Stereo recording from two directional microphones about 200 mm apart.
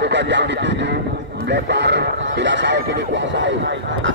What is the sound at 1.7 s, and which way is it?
Speech, 60° right (ahead or behind).